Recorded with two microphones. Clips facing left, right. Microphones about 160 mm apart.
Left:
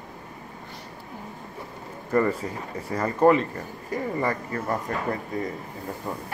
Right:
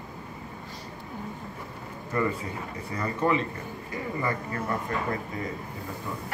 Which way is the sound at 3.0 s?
45° left (ahead or behind).